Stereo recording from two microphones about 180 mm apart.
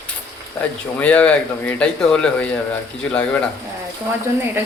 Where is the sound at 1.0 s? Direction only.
5° left (ahead or behind).